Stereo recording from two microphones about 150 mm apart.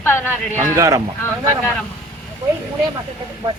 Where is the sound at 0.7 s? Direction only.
20° right (ahead or behind).